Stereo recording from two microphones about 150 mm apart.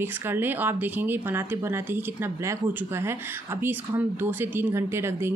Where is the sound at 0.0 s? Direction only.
15° right (ahead or behind).